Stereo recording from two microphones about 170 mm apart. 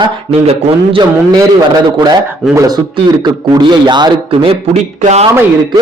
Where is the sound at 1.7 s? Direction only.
25° right (ahead or behind).